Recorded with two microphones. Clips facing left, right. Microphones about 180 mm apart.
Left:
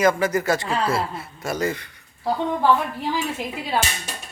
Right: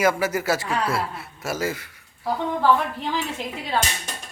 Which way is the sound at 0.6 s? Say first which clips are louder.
Left 1 dB; 25° left (ahead or behind).